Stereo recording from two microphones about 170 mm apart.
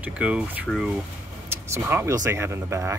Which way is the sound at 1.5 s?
15° right (ahead or behind).